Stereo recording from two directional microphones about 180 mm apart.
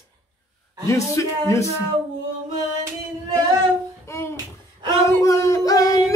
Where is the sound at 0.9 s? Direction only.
15° left (ahead or behind).